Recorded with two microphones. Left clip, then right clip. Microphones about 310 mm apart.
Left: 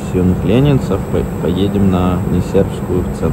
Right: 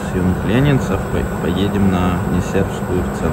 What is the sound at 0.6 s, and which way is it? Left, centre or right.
Speech, centre.